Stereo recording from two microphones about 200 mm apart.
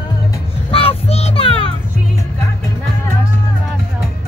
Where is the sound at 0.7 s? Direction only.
30° left (ahead or behind).